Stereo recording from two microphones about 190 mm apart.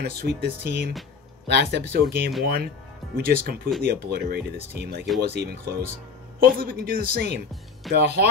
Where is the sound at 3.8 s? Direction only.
55° right (ahead or behind).